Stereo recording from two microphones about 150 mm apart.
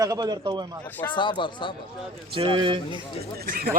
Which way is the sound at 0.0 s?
25° right (ahead or behind).